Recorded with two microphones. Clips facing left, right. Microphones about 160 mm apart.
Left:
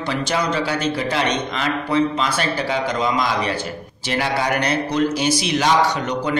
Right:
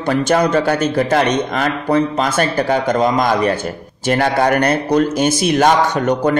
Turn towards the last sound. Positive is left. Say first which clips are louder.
# right 6 dB
turn(degrees=-50)  # may be behind; listen again after turning